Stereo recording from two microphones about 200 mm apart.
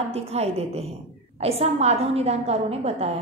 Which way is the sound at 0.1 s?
30° right (ahead or behind).